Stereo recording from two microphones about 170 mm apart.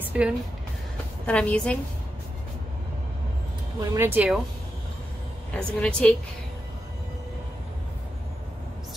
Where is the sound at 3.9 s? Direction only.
10° right (ahead or behind).